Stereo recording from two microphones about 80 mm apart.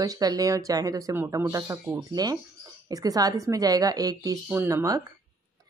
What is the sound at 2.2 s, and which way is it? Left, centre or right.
A woman's voice, right.